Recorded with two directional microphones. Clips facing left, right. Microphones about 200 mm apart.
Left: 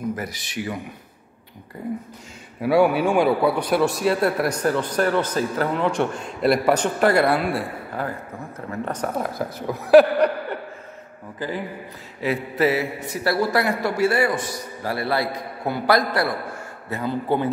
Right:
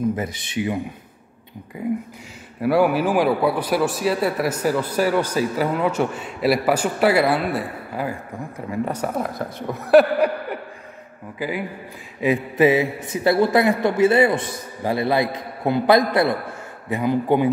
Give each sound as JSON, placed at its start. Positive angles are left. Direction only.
{"t": 0.1, "sound": "a man's voice", "side_deg": -25}
{"t": 2.6, "sound": "a man's voice", "side_deg": 0}
{"t": 11.3, "sound": "mantra", "side_deg": -10}
{"t": 13.1, "sound": "a man's voice", "side_deg": -20}
{"t": 16.9, "sound": "mantra", "side_deg": -15}